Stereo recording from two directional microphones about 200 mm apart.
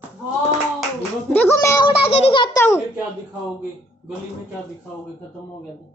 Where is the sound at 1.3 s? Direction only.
10° left (ahead or behind).